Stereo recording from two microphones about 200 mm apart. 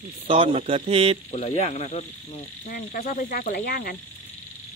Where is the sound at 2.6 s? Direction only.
50° left (ahead or behind).